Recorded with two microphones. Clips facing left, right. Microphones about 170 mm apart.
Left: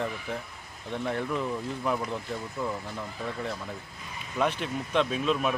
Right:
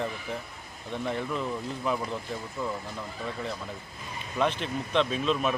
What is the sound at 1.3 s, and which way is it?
Speech, 15° left (ahead or behind).